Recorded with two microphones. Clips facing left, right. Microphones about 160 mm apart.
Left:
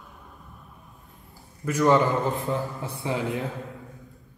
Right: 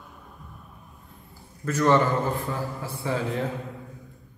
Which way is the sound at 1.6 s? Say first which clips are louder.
Left 1 dB; 10° left (ahead or behind).